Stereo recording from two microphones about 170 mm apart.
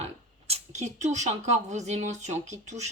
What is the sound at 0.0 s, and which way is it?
Speech, 40° right (ahead or behind).